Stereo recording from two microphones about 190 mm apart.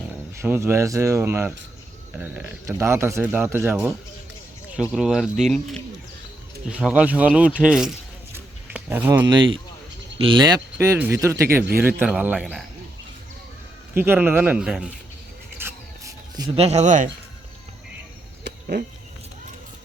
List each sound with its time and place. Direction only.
0.1 s speech: 10° right (ahead or behind)
9.3 s speech: 25° right (ahead or behind); by 12.6 s 5° right (ahead or behind)
13.9 s speech: 10° right (ahead or behind)
15.5 s a sound: 15° right (ahead or behind)
16.6 s speech: 35° right (ahead or behind)
18.4 s a sound: 55° right (ahead or behind)